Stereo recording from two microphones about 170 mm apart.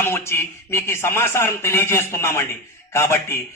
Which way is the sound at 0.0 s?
15° left (ahead or behind).